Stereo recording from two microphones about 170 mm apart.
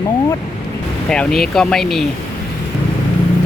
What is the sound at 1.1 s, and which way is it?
Speech, 5° left (ahead or behind).